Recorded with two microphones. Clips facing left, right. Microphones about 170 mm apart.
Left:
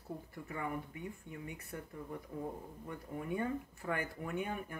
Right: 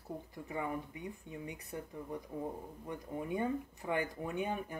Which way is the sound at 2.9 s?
20° right (ahead or behind).